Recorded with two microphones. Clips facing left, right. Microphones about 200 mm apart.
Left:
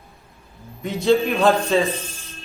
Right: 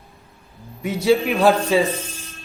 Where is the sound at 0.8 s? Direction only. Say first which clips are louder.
Even; 10° right (ahead or behind).